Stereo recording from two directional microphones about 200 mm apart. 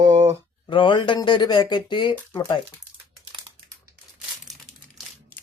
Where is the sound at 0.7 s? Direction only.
25° left (ahead or behind).